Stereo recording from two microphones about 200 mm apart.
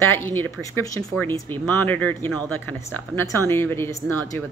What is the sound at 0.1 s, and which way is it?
A woman's voice, 10° left (ahead or behind).